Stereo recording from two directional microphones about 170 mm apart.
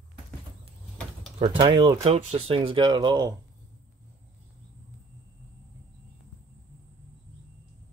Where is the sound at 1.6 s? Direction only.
25° right (ahead or behind).